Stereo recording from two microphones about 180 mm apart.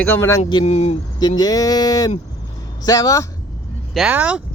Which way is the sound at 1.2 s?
20° left (ahead or behind).